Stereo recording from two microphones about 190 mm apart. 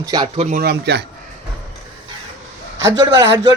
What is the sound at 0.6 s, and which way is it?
Speech, 60° right (ahead or behind).